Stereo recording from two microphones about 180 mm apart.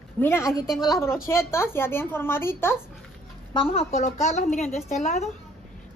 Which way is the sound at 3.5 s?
30° left (ahead or behind).